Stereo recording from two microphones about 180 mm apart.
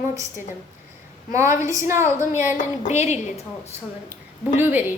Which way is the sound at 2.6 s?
40° left (ahead or behind).